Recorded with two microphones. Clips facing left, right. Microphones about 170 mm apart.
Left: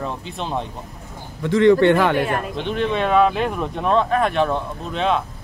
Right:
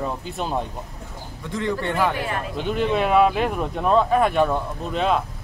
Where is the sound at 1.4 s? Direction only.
85° left.